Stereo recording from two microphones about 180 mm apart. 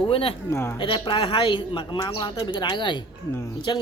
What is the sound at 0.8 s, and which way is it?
Speech, 30° left (ahead or behind).